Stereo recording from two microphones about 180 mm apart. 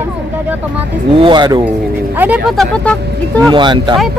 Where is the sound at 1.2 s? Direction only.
25° right (ahead or behind).